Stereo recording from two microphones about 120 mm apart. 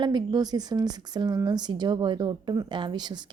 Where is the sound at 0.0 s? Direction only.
35° right (ahead or behind).